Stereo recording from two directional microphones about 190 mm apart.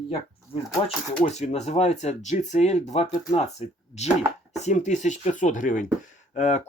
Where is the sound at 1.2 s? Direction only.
35° left (ahead or behind).